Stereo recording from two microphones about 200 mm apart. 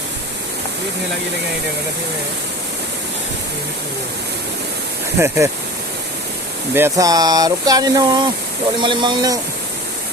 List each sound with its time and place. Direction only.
5.2 s speech: 15° right (ahead or behind)
6.7 s speech: 15° right (ahead or behind)